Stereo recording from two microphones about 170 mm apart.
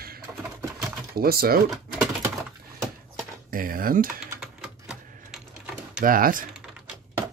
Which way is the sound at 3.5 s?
55° right (ahead or behind).